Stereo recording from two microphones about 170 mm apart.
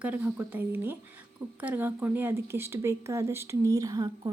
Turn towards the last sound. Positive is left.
turn(degrees=-20)  # may be behind; listen again after turning